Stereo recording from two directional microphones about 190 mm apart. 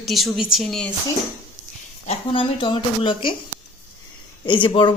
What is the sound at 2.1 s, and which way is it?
Speech, 25° left (ahead or behind).